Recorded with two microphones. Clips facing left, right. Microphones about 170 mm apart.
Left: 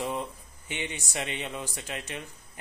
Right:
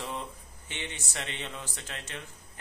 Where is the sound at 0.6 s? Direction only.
10° left (ahead or behind).